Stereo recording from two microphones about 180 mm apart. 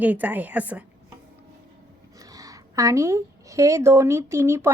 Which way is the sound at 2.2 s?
20° right (ahead or behind).